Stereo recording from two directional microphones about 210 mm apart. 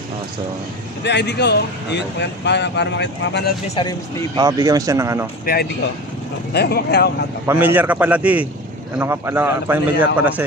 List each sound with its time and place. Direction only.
1.0 s speech: 55° left (ahead or behind)
3.6 s speech: 30° left (ahead or behind)
4.4 s a man's voice: 15° right (ahead or behind)
5.4 s speech: 45° left (ahead or behind)
7.4 s a man's voice: 10° right (ahead or behind)